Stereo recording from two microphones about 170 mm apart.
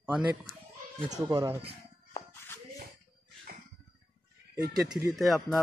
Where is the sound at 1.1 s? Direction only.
20° right (ahead or behind).